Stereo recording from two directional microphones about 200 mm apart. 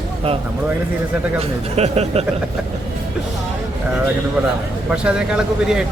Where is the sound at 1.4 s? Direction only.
30° right (ahead or behind).